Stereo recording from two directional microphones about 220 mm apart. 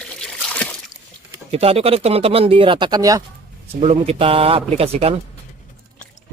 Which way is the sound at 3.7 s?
25° right (ahead or behind).